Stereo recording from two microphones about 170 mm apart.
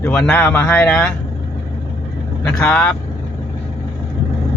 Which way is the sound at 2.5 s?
5° left (ahead or behind).